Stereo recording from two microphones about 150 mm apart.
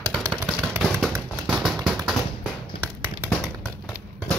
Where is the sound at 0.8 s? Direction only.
Centre (ahead or behind).